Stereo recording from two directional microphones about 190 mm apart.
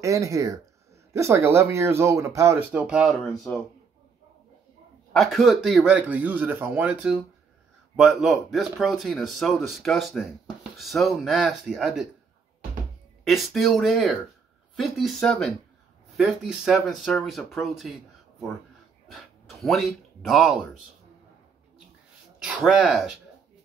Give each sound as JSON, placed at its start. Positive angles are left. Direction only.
{"t": 0.0, "sound": "speech", "side_deg": -15}
{"t": 5.1, "sound": "speech", "side_deg": 0}
{"t": 13.2, "sound": "speech", "side_deg": 0}
{"t": 19.0, "sound": "speech", "side_deg": 0}
{"t": 22.4, "sound": "speech", "side_deg": -5}